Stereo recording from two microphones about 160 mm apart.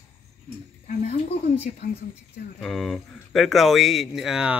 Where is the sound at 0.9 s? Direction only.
40° left (ahead or behind).